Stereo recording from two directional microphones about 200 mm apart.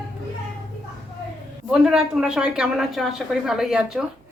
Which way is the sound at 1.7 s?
5° right (ahead or behind).